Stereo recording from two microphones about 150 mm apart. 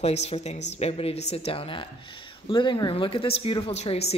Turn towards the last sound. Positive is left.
turn(degrees=45)  # may be behind; listen again after turning